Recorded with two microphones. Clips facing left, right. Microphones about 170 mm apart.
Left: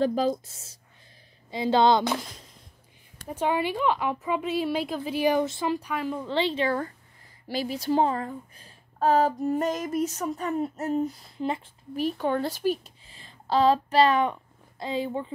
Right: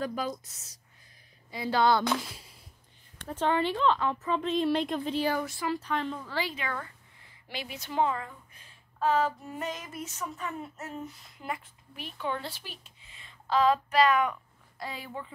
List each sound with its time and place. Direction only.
0.0 s speech: 30° left (ahead or behind)
2.2 s a sound: 10° right (ahead or behind)
3.2 s a woman's voice: 10° left (ahead or behind)
5.4 s speech: 25° left (ahead or behind)
5.8 s a woman's voice: 10° left (ahead or behind)
6.2 s speech: 25° left (ahead or behind)
11.9 s speech: 40° left (ahead or behind); by 15.3 s 25° left (ahead or behind)